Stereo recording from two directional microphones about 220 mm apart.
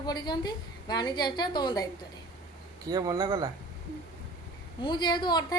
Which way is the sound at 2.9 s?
15° right (ahead or behind).